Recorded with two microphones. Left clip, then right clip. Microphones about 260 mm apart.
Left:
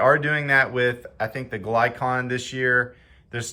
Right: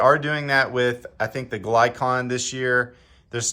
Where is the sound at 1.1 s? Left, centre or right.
Right.